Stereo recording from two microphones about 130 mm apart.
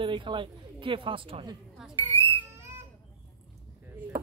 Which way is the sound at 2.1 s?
40° right (ahead or behind).